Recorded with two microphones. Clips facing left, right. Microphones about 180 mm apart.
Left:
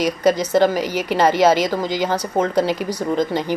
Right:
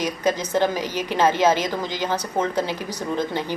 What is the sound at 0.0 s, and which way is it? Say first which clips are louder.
A woman's voice: left 6 dB; 10° left (ahead or behind).